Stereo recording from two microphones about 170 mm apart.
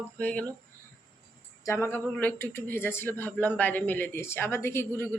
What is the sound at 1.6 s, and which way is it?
Speech, 15° left (ahead or behind).